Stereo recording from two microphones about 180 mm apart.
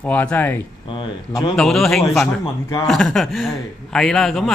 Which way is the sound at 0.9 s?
25° left (ahead or behind).